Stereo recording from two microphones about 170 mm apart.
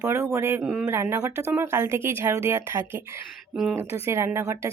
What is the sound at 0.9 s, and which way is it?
A woman's voice, 15° right (ahead or behind).